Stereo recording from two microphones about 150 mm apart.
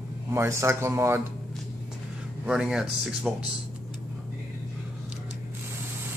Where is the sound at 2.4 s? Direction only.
5° right (ahead or behind).